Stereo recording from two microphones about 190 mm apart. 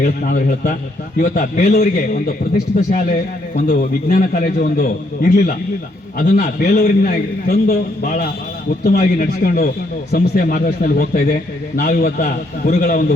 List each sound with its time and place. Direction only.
0.0 s a man's voice: 45° left (ahead or behind)
3.5 s a man's voice: 50° left (ahead or behind)